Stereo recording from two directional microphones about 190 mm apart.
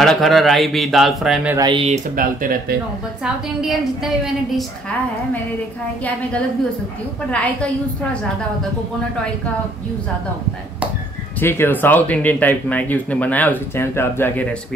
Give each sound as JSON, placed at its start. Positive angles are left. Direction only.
{"t": 0.0, "sound": "speech", "side_deg": 0}
{"t": 1.6, "sound": "speech", "side_deg": -25}
{"t": 2.1, "sound": "speech", "side_deg": -50}
{"t": 3.6, "sound": "speech", "side_deg": 0}
{"t": 7.2, "sound": "speech", "side_deg": 5}
{"t": 11.3, "sound": "speech", "side_deg": 10}